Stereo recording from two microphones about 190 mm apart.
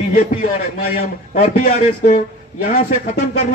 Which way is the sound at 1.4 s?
45° left (ahead or behind).